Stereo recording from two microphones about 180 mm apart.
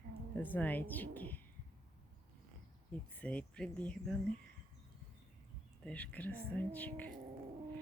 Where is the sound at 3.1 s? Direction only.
5° left (ahead or behind).